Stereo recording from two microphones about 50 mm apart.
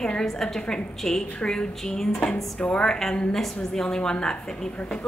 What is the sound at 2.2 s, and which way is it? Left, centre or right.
Speech, left.